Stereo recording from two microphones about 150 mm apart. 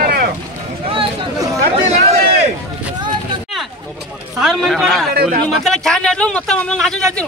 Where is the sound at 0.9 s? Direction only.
35° right (ahead or behind).